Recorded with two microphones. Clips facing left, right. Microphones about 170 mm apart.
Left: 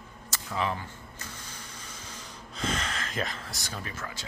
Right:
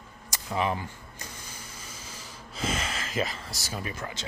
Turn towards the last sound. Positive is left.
turn(degrees=-20)  # may be behind; listen again after turning